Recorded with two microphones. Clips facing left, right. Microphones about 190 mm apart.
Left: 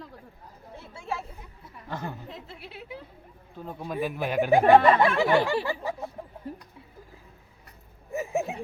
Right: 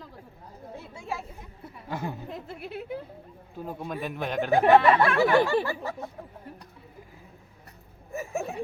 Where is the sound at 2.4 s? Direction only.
50° right (ahead or behind).